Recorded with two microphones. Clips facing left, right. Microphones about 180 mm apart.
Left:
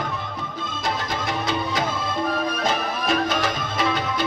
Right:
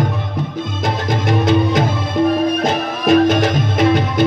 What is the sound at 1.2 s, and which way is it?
Music, 50° right (ahead or behind).